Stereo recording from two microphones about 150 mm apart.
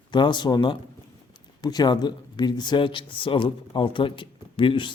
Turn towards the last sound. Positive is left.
turn(degrees=35)  # may be behind; listen again after turning